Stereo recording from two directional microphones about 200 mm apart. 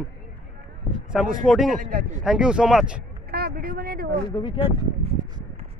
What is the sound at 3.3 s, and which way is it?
Speech, 50° right (ahead or behind).